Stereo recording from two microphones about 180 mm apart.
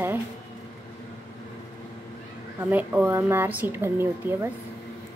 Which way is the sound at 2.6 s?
10° right (ahead or behind).